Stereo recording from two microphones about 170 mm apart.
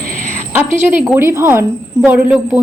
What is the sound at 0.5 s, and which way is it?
A woman's voice, 10° right (ahead or behind).